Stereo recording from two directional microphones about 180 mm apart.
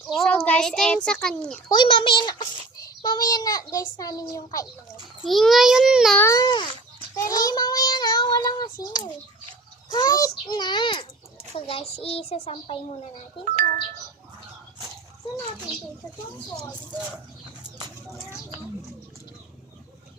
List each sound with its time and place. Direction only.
0.1 s a child's voice: 5° left (ahead or behind)
1.6 s a child's voice: 25° left (ahead or behind)
5.2 s a child's voice: centre (ahead or behind)
6.1 s a child's voice: 15° left (ahead or behind)
7.2 s child singing: 20° left (ahead or behind)
9.9 s a child's voice: 20° left (ahead or behind)